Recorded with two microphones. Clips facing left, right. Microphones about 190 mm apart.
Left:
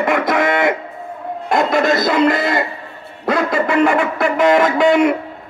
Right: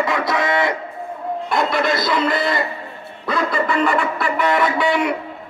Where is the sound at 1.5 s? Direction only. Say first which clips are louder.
Left 5 dB; 45° left (ahead or behind).